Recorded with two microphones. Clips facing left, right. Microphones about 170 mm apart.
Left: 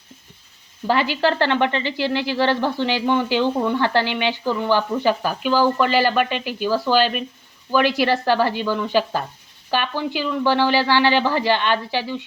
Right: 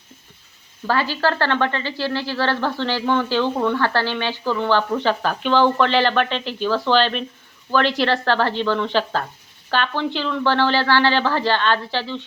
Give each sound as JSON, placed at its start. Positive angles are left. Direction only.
{"t": 0.9, "sound": "speech", "side_deg": 15}